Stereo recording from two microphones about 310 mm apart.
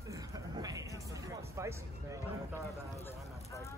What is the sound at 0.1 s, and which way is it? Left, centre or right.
Music, centre.